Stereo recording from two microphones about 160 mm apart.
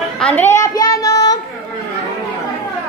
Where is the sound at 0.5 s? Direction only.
20° left (ahead or behind).